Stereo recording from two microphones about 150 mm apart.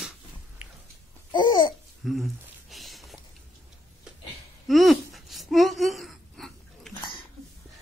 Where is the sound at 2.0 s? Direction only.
Centre (ahead or behind).